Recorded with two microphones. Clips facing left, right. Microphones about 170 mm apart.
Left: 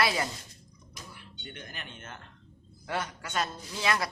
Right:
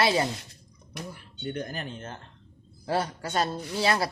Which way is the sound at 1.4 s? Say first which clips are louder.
Right 12 dB; 40° right (ahead or behind).